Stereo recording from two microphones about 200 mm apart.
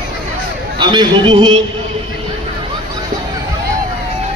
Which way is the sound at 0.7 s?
25° right (ahead or behind).